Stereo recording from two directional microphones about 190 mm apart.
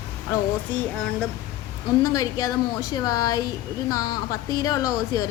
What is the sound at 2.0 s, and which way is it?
A woman's voice, 20° left (ahead or behind).